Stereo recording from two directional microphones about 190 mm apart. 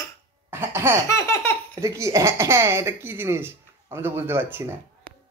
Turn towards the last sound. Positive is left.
turn(degrees=-10)  # may be behind; listen again after turning